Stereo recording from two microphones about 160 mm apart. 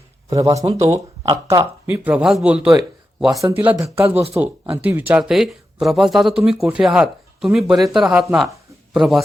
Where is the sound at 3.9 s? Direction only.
15° right (ahead or behind).